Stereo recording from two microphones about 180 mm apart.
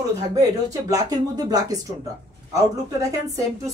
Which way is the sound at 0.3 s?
20° right (ahead or behind).